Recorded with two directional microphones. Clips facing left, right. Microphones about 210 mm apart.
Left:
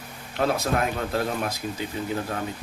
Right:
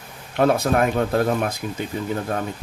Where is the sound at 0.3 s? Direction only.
55° right (ahead or behind).